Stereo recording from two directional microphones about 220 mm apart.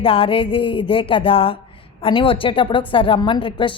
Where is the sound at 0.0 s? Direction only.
25° left (ahead or behind).